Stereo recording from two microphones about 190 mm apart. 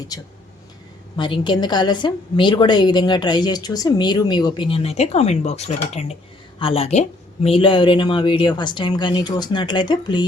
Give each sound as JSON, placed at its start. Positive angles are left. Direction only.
{"t": 0.1, "sound": "a woman's voice", "side_deg": 20}